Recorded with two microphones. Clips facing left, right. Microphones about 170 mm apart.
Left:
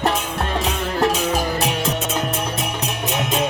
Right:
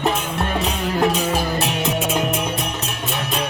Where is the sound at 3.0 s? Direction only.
20° left (ahead or behind).